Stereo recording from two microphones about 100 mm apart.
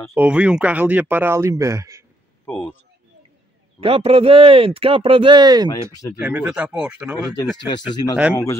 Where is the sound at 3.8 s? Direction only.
70° right (ahead or behind); by 5.7 s 45° right (ahead or behind).